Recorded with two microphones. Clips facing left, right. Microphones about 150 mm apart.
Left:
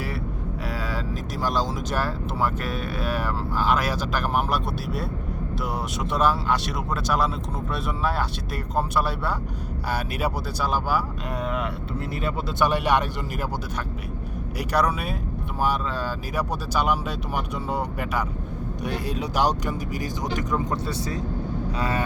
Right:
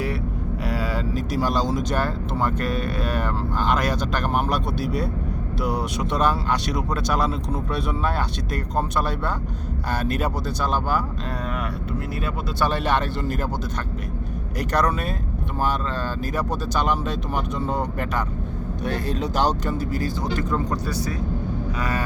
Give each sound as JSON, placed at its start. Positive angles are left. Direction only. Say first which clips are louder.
{"t": 0.7, "sound": "speech", "louder": "right 5 dB", "side_deg": 0}
{"t": 12.2, "sound": "speech", "louder": "left 2 dB", "side_deg": 15}
{"t": 14.6, "sound": "speech", "louder": "right 1 dB", "side_deg": 10}
{"t": 16.3, "sound": "speech", "louder": "right 1 dB", "side_deg": 10}
{"t": 21.8, "sound": "vehicle", "louder": "left 1 dB", "side_deg": 25}